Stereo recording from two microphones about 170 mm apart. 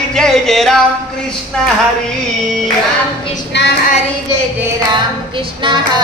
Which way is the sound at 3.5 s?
90° left.